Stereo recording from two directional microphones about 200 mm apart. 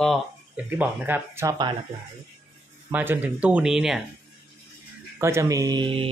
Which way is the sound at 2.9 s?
10° right (ahead or behind).